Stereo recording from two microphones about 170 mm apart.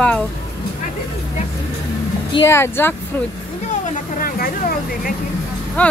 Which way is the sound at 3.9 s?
60° left (ahead or behind).